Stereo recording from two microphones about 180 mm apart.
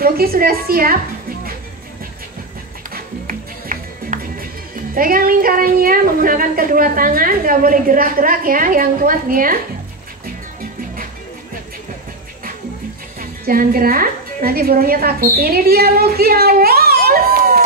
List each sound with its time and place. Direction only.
0.0 s a woman's voice: 55° right (ahead or behind)
2.9 s music: 50° right (ahead or behind)
13.2 s a woman's voice: 55° right (ahead or behind)